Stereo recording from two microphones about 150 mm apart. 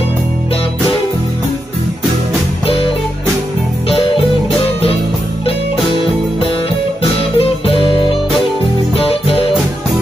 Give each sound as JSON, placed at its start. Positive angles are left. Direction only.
{"t": 2.6, "sound": "music", "side_deg": 40}
{"t": 3.9, "sound": "music", "side_deg": 35}
{"t": 7.0, "sound": "music", "side_deg": 40}